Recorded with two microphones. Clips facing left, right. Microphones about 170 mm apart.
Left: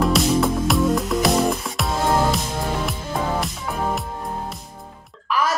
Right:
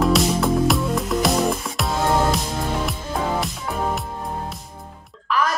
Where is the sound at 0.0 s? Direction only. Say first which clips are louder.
Even; centre (ahead or behind).